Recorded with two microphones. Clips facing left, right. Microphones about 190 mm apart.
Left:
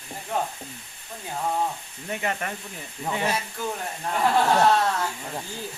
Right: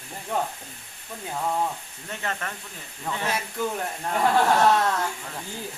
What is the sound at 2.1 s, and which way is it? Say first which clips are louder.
Speech: left 3 dB; 15° left (ahead or behind).